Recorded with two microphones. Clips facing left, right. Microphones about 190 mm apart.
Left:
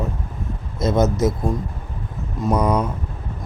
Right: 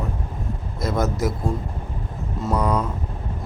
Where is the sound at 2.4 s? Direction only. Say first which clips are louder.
Left 3 dB; 15° left (ahead or behind).